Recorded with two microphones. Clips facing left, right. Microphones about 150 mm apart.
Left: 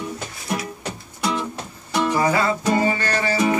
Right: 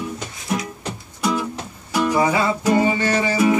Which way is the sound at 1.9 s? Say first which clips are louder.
Right 1 dB; 10° right (ahead or behind).